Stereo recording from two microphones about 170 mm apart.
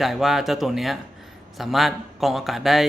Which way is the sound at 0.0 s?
Centre (ahead or behind).